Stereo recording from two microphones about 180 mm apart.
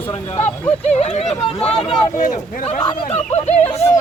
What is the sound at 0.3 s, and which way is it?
Speech, 10° left (ahead or behind).